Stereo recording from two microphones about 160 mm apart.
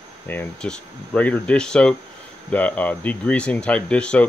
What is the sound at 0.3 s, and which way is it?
Speech, 10° left (ahead or behind).